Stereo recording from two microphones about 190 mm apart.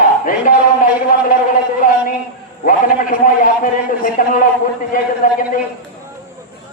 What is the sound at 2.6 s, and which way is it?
A man's voice, 45° left (ahead or behind).